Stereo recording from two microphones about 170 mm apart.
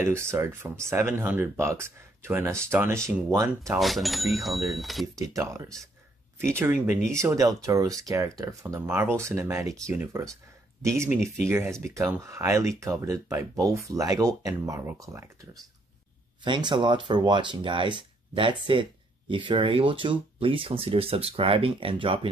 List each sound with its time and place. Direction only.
0.0 s speech: 15° right (ahead or behind)
3.8 s speech: centre (ahead or behind)
5.5 s speech: 15° right (ahead or behind)